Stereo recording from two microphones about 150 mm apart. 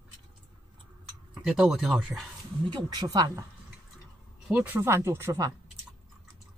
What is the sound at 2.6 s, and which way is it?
Speech, 30° right (ahead or behind).